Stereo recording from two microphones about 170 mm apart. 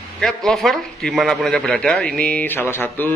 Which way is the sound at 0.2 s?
Centre (ahead or behind).